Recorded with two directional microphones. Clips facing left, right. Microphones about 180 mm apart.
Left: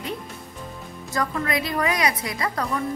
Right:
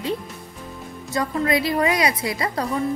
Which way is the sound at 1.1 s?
30° right (ahead or behind).